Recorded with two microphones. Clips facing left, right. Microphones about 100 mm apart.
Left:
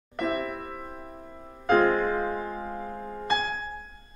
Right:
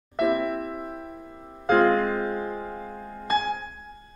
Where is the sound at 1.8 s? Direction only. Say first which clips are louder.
Right 3 dB; 5° left (ahead or behind).